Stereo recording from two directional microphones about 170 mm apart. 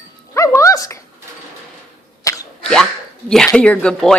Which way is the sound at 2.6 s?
5° left (ahead or behind).